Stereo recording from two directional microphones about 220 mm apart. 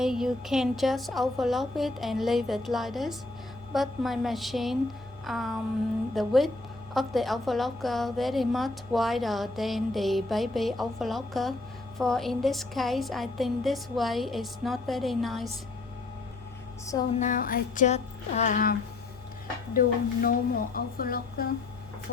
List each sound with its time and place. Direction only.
0.0 s a woman's voice: centre (ahead or behind)
17.2 s a woman's voice: 35° left (ahead or behind)